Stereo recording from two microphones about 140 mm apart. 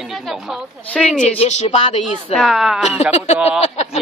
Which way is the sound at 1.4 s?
50° left (ahead or behind).